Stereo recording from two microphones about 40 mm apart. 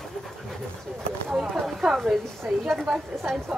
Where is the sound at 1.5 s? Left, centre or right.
Centre.